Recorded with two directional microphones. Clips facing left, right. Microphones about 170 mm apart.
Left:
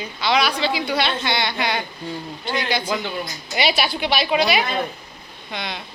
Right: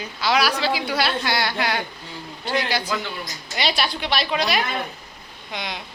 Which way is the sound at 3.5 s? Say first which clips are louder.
Left 3 dB; 5° left (ahead or behind).